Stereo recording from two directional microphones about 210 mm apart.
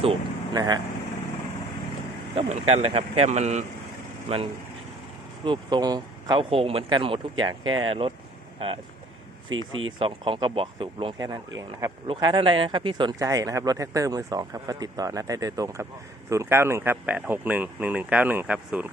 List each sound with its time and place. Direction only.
0.0 s speech: 20° right (ahead or behind)
2.3 s speech: 30° right (ahead or behind)
5.5 s speech: 20° right (ahead or behind)
9.5 s speech: 70° right (ahead or behind)
10.0 s speech: 25° right (ahead or behind); by 18.9 s 5° right (ahead or behind)